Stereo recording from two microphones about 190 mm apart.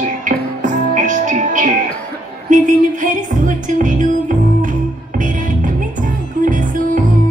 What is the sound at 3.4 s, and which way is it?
Music, 45° right (ahead or behind).